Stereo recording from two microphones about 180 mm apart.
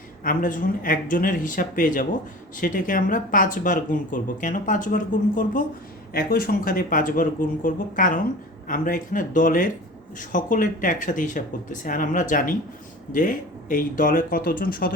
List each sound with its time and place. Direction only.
0.3 s speech: 50° left (ahead or behind)